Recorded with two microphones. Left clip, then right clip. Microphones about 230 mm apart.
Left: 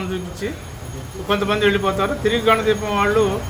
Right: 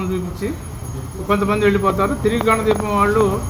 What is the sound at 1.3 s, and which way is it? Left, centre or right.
A man's voice, centre.